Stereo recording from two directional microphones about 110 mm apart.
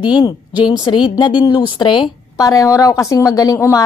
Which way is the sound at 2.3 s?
30° left (ahead or behind).